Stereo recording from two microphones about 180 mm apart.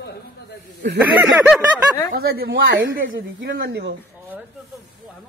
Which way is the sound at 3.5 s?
65° right (ahead or behind).